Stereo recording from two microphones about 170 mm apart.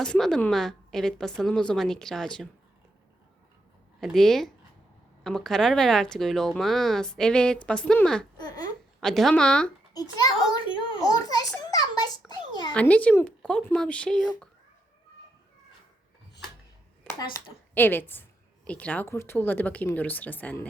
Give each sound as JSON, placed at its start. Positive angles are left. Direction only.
{"t": 0.0, "sound": "speech", "side_deg": 5}
{"t": 4.0, "sound": "speech", "side_deg": 0}
{"t": 8.4, "sound": "speech", "side_deg": 25}
{"t": 9.0, "sound": "speech", "side_deg": 0}
{"t": 10.5, "sound": "a child's voice", "side_deg": 30}
{"t": 11.7, "sound": "a sound", "side_deg": 25}
{"t": 12.7, "sound": "a woman's voice", "side_deg": 10}
{"t": 17.2, "sound": "a woman's voice", "side_deg": 15}